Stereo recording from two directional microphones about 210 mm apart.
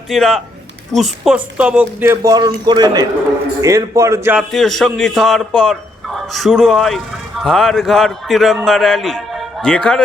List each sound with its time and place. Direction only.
0.1 s speech: centre (ahead or behind)